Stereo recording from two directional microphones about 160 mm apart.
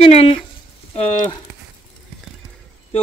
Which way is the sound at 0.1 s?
40° left (ahead or behind).